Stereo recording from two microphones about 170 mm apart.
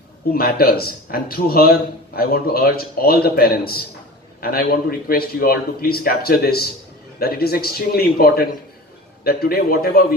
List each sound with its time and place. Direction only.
0.3 s a man's voice: 65° left (ahead or behind)